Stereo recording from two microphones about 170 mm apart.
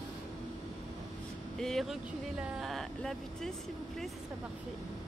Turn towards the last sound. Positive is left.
turn(degrees=0)  # may be behind; listen again after turning